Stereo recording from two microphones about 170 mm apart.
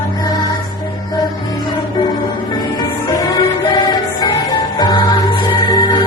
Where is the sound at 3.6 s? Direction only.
25° left (ahead or behind).